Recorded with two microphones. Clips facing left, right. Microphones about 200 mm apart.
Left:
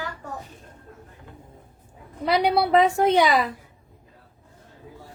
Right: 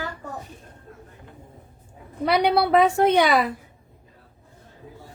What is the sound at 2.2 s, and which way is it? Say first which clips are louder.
A woman's voice: right 1 dB; 65° right (ahead or behind).